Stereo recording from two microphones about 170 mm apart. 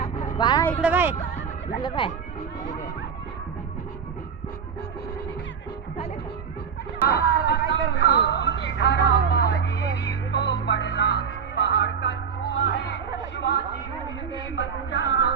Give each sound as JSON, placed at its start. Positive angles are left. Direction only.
{"t": 0.3, "sound": "speech", "side_deg": 25}
{"t": 0.8, "sound": "speech", "side_deg": -10}
{"t": 1.8, "sound": "speech", "side_deg": 25}
{"t": 7.1, "sound": "a sound", "side_deg": 65}
{"t": 12.6, "sound": "chatter", "side_deg": 90}
{"t": 14.5, "sound": "music", "side_deg": 90}